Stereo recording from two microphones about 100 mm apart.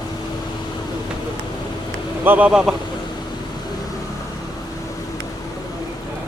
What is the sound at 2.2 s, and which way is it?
Speech, 15° right (ahead or behind).